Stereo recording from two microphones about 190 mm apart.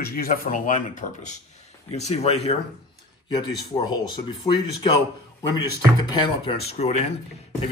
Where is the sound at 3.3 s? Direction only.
20° left (ahead or behind).